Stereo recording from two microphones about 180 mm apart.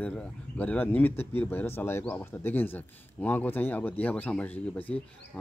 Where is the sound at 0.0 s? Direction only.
10° left (ahead or behind).